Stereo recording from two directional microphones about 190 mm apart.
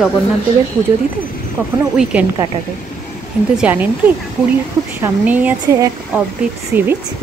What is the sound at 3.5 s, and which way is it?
Speech, 10° right (ahead or behind).